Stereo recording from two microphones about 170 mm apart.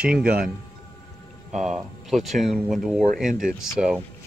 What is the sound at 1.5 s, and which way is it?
Speech, centre (ahead or behind).